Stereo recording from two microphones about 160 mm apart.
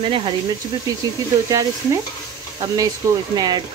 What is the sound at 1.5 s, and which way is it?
Speech, 20° right (ahead or behind).